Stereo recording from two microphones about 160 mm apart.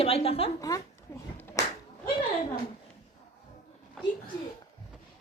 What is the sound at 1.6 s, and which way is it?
Whip, 20° left (ahead or behind).